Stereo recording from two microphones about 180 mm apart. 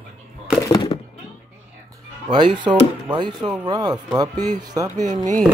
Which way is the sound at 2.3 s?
25° right (ahead or behind).